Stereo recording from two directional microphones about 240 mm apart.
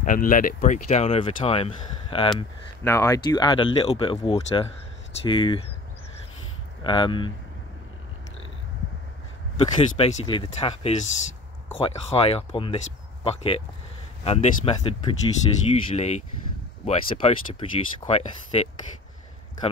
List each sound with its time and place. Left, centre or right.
0.0 s speech: left
6.8 s speech: left
9.6 s speech: left